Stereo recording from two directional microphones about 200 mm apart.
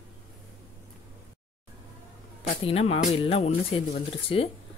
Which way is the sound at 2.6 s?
30° left (ahead or behind).